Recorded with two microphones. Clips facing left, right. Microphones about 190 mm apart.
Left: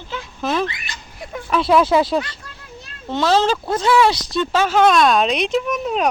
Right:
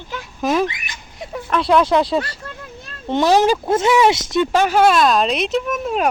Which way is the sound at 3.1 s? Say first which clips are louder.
Right 3 dB; 15° right (ahead or behind).